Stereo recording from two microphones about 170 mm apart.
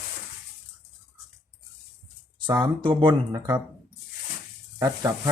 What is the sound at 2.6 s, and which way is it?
Speech, 25° right (ahead or behind).